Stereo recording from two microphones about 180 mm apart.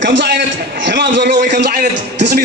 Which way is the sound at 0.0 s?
85° right.